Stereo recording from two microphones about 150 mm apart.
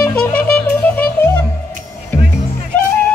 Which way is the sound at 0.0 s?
10° left (ahead or behind).